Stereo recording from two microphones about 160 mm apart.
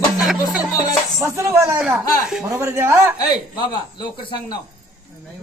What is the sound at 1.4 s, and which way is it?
Speech, 20° right (ahead or behind).